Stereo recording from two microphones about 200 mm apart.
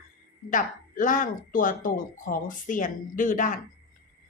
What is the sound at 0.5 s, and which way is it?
Speech, 40° left (ahead or behind).